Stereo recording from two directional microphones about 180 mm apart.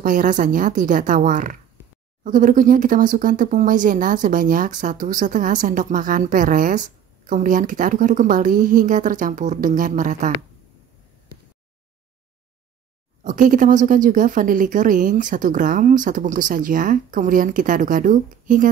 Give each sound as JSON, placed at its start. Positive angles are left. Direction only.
{"t": 0.0, "sound": "speech", "side_deg": -50}
{"t": 13.2, "sound": "speech", "side_deg": -45}